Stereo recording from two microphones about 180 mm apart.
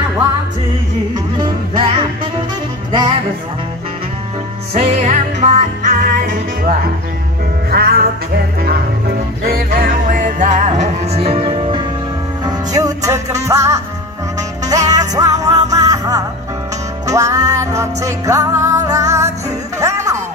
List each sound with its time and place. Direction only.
4.7 s music: 40° right (ahead or behind)
7.7 s music: 55° right (ahead or behind)
9.4 s music: 55° right (ahead or behind); by 20.2 s 15° right (ahead or behind)